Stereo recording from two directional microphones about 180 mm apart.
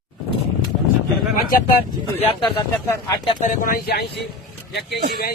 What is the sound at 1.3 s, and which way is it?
Speech, 50° left (ahead or behind).